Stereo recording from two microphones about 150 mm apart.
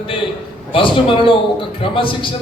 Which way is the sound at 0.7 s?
35° left (ahead or behind).